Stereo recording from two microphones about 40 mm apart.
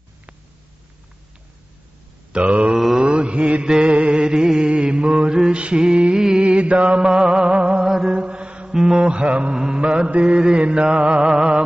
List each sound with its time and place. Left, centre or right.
2.3 s mantra: right
3.6 s mantra: centre
5.3 s mantra: centre
5.6 s a sound: right
6.1 s music: centre
6.4 s mantra: right
7.0 s music: right
7.8 s mantra: centre
8.1 s mantra: right
9.5 s mantra: right